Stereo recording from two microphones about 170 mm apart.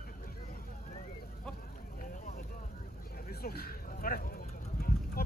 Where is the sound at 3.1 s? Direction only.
60° left (ahead or behind).